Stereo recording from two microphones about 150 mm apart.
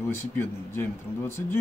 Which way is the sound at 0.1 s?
15° left (ahead or behind).